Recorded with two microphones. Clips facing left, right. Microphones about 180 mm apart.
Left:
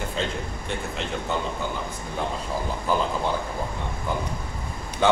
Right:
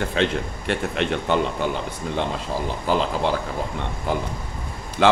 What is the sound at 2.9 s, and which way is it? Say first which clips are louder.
Speech: right 3 dB; 90° right.